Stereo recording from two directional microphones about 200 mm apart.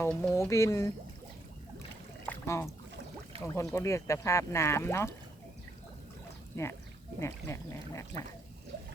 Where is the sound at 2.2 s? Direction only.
10° left (ahead or behind).